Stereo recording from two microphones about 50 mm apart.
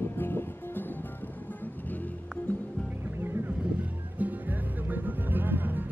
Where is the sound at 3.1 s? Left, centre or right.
Right.